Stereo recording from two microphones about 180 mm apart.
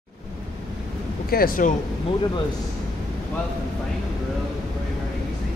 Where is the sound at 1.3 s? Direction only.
55° left (ahead or behind).